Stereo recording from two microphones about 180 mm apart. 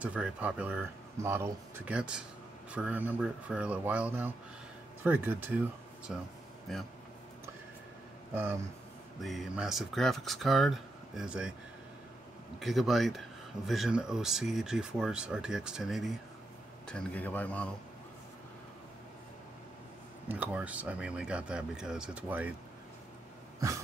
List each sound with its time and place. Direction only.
0.0 s speech: 10° right (ahead or behind)
9.2 s speech: centre (ahead or behind)
12.5 s a man's voice: centre (ahead or behind)
20.2 s speech: 10° right (ahead or behind)